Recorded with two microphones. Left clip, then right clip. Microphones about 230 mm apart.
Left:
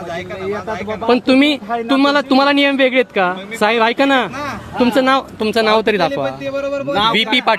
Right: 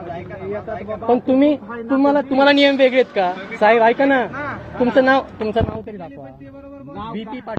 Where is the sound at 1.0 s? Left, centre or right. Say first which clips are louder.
Left 3 dB; left.